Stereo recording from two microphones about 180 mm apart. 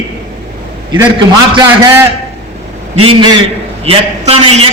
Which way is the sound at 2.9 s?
25° right (ahead or behind).